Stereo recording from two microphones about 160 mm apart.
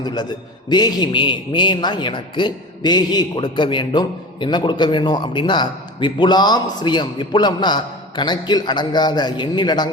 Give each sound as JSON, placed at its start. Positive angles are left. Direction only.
{"t": 0.0, "sound": "a man's voice", "side_deg": 25}